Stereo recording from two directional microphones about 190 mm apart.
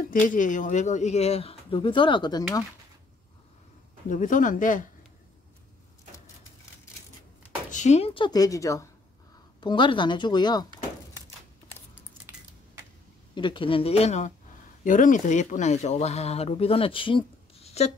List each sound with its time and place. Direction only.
0.1 s speech: 45° left (ahead or behind); by 2.6 s 20° left (ahead or behind)
4.1 s speech: 45° left (ahead or behind)
7.7 s a woman's voice: 35° left (ahead or behind); by 10.7 s 20° left (ahead or behind)
13.3 s a woman's voice: 25° left (ahead or behind)